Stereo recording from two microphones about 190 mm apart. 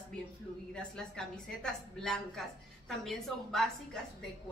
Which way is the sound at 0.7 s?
5° left (ahead or behind).